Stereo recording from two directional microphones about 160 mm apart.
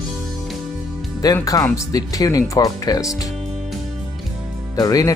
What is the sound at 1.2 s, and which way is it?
Speech, 20° left (ahead or behind).